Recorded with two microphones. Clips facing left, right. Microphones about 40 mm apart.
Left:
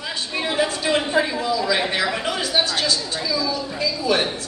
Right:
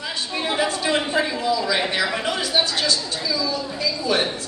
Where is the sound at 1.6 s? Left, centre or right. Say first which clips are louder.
Left 1 dB; centre.